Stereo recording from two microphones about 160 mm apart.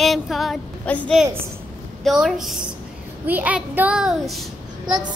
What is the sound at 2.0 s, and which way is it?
A child's voice, centre (ahead or behind).